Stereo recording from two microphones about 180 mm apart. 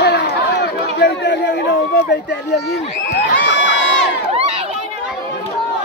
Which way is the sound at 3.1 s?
90° left.